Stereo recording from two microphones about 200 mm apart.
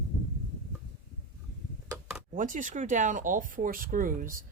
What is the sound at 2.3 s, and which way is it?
Speech, 40° right (ahead or behind).